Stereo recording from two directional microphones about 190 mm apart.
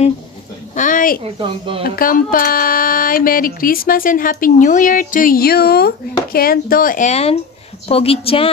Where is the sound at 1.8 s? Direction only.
50° left (ahead or behind).